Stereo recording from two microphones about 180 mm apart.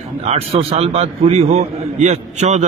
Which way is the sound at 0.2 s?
35° right (ahead or behind).